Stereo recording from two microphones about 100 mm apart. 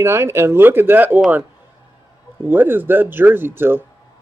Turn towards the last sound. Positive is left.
turn(degrees=-20)  # may be behind; listen again after turning